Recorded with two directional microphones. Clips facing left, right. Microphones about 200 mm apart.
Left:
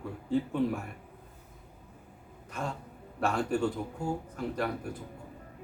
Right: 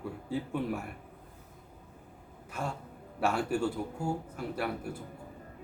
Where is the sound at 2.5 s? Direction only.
10° right (ahead or behind).